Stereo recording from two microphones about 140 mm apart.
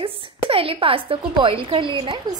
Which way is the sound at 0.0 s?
40° right (ahead or behind).